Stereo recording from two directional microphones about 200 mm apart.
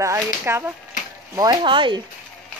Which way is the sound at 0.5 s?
10° right (ahead or behind).